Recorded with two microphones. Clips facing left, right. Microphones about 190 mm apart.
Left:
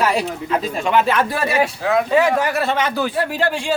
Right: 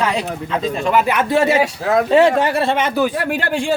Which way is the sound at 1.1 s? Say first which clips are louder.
Right 4 dB; 25° right (ahead or behind).